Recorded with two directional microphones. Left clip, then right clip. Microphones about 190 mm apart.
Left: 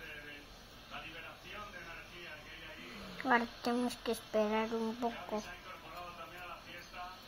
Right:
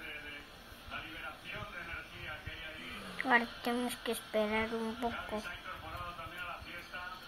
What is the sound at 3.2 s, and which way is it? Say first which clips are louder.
Speech: right 2 dB; 20° left (ahead or behind).